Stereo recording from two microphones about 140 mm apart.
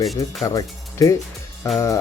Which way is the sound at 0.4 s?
25° left (ahead or behind).